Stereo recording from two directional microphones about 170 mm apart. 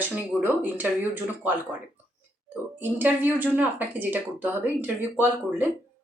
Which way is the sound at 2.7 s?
10° right (ahead or behind).